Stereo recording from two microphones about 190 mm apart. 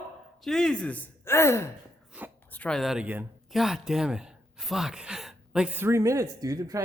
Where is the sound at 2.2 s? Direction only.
5° right (ahead or behind).